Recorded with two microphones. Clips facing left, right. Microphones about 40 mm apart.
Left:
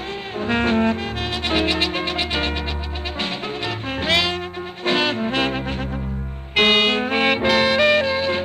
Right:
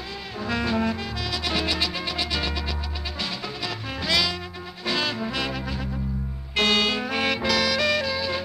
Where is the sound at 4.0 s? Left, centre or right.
Left.